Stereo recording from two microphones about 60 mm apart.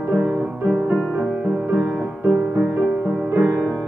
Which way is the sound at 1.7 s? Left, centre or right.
Right.